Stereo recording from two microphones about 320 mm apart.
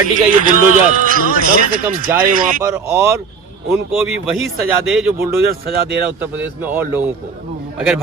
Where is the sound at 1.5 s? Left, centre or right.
Right.